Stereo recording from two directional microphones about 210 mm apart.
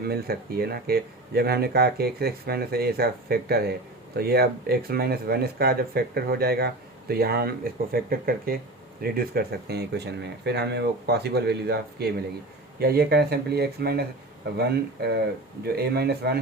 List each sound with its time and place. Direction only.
0.0 s speech: 45° right (ahead or behind)
15.6 s speech: 50° right (ahead or behind)